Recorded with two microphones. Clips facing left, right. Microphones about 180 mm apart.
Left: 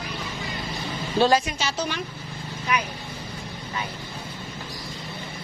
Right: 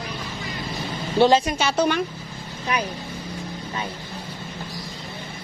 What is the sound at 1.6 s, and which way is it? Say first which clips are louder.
Speech: right 7 dB; 55° right (ahead or behind).